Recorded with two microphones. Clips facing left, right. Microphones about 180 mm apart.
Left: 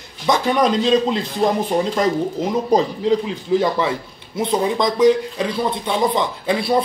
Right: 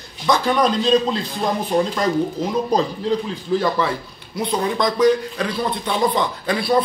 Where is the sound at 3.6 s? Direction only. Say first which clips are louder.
Left 1 dB; 20° left (ahead or behind).